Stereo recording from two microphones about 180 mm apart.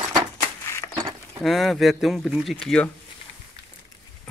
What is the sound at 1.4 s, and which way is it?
Speech, centre (ahead or behind).